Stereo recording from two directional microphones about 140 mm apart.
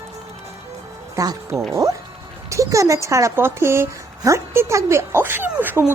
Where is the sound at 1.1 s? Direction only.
25° right (ahead or behind).